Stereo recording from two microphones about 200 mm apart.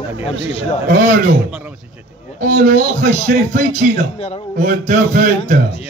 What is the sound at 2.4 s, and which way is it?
Speech, 40° right (ahead or behind).